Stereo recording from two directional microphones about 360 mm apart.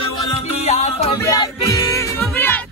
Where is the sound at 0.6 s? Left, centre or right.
Centre.